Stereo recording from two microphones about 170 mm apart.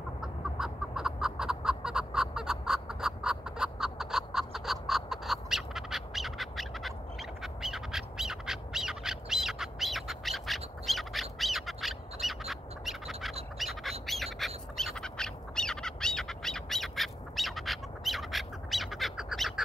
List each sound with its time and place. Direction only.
0.2 s chicken: 5° right (ahead or behind)
13.6 s squawk: centre (ahead or behind)